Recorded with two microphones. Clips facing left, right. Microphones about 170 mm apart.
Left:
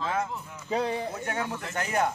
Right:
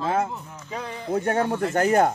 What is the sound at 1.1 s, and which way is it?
Speech, 50° right (ahead or behind).